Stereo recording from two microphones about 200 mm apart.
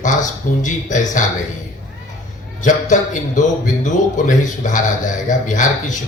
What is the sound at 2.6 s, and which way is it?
Speech, 40° left (ahead or behind).